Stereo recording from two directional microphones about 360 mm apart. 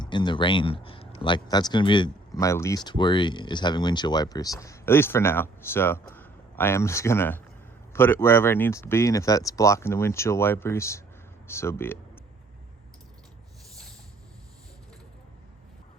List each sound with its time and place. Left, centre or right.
0.0 s speech: centre